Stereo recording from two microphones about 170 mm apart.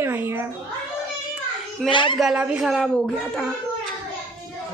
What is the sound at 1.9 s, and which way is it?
Speech, 30° left (ahead or behind).